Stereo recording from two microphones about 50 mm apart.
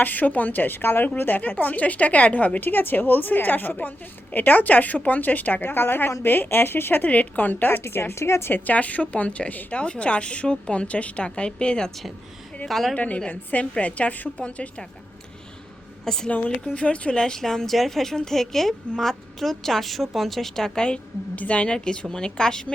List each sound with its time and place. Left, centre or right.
0.0 s a woman's voice: left
5.6 s speech: left
7.1 s a woman's voice: left
7.8 s speech: left
8.6 s a woman's voice: left
12.6 s a woman's voice: centre
12.9 s a woman's voice: left
16.0 s a woman's voice: centre
16.6 s a woman's voice: left
21.3 s a woman's voice: left